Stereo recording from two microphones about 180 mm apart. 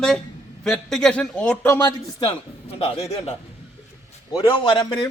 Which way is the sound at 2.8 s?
35° left (ahead or behind).